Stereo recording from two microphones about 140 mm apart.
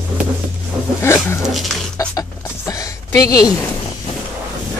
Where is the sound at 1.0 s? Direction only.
20° left (ahead or behind).